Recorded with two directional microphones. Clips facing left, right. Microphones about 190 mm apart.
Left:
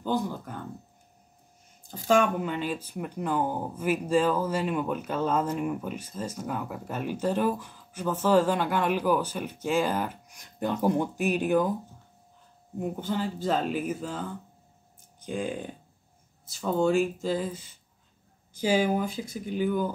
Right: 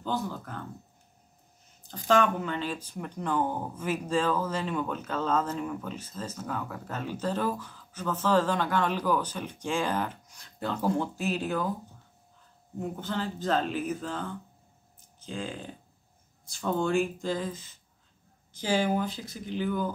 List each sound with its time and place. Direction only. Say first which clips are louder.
0.0 s speech: left 3 dB; 15° left (ahead or behind)
1.8 s speech: left 1 dB; 10° left (ahead or behind)
12.7 s speech: left 3 dB; 10° left (ahead or behind)
16.4 s speech: left 4 dB; 5° left (ahead or behind)